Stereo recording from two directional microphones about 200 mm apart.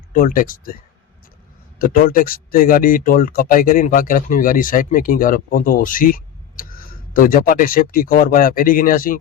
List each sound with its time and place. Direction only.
0.1 s speech: 45° left (ahead or behind)
1.8 s speech: 45° left (ahead or behind)